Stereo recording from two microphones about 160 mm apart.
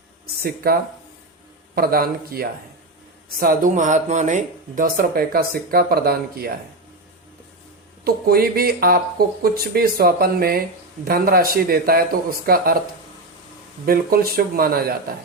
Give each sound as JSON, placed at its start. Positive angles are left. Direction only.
{"t": 0.4, "sound": "speech", "side_deg": -70}
{"t": 3.4, "sound": "speech", "side_deg": -60}
{"t": 8.0, "sound": "speech", "side_deg": -70}
{"t": 13.8, "sound": "speech", "side_deg": -70}